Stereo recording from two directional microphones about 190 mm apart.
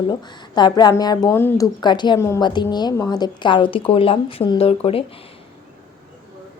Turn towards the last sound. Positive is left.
turn(degrees=30)  # may be behind; listen again after turning